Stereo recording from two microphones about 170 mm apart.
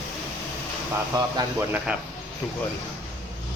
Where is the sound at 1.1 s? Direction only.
20° right (ahead or behind).